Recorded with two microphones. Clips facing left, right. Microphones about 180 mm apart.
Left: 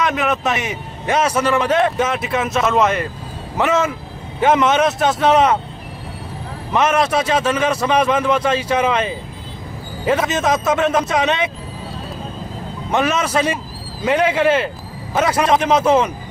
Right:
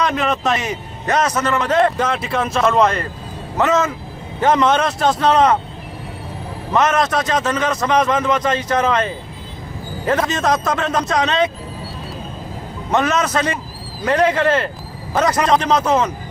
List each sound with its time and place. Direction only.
0.1 s a man's voice: 5° left (ahead or behind)
6.7 s a man's voice: 10° left (ahead or behind)
12.9 s a man's voice: 10° left (ahead or behind)